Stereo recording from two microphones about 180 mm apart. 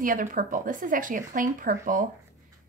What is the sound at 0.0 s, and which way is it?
Speech, 50° right (ahead or behind).